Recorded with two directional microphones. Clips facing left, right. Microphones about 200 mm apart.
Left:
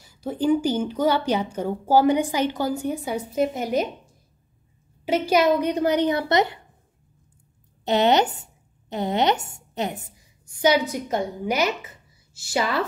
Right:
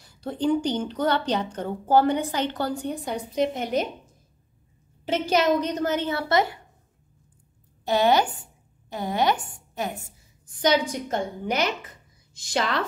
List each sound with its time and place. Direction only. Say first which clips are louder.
0.0 s speech: left 2 dB; 5° left (ahead or behind)
5.3 s speech: left 2 dB; 10° left (ahead or behind)
7.8 s a woman's voice: left 2 dB; 20° left (ahead or behind)
10.6 s speech: left 2 dB; 10° left (ahead or behind)